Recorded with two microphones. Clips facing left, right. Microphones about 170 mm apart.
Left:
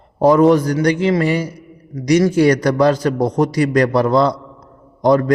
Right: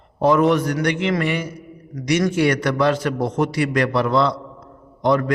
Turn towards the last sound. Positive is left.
turn(degrees=40)  # may be behind; listen again after turning